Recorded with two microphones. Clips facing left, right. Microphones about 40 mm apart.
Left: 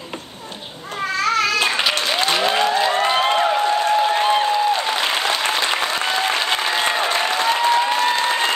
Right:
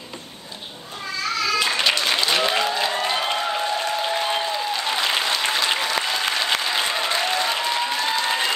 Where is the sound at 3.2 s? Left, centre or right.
Left.